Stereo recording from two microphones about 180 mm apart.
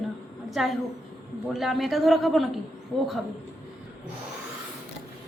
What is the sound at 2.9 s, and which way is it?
Speech, 20° left (ahead or behind).